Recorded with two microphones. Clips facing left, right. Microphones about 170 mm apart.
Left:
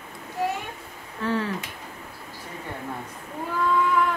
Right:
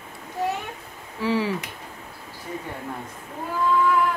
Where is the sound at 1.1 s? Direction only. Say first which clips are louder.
Right 3 dB; 10° right (ahead or behind).